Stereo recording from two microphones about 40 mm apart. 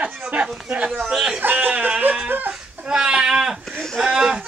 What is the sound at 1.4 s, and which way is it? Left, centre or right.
Music, right.